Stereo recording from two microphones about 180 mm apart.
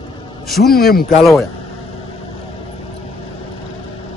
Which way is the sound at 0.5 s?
Centre (ahead or behind).